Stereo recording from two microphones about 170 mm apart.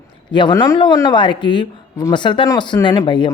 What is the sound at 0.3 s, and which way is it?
A woman's voice, 25° left (ahead or behind).